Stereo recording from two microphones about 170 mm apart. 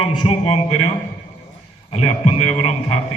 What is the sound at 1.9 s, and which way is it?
Speech, 40° left (ahead or behind).